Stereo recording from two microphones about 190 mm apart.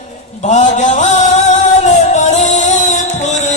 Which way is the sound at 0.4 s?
40° left (ahead or behind).